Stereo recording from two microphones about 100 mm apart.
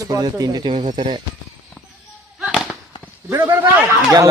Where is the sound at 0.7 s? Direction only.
55° right (ahead or behind).